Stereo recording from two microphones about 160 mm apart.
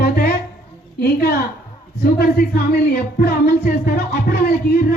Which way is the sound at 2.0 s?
75° left (ahead or behind).